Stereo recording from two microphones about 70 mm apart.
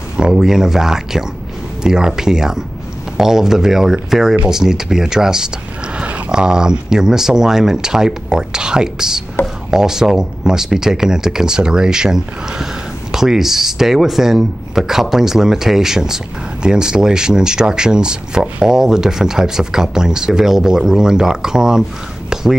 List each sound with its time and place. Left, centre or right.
0.2 s speech: centre
5.9 s speech: centre
22.3 s whispering: centre